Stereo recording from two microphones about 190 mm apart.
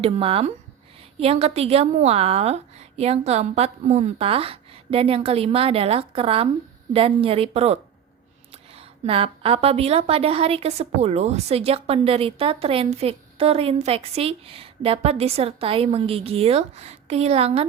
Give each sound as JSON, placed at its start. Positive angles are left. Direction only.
{"t": 0.0, "sound": "a woman's voice", "side_deg": -30}